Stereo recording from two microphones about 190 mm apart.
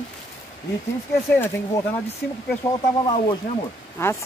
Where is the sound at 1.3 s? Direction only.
10° left (ahead or behind).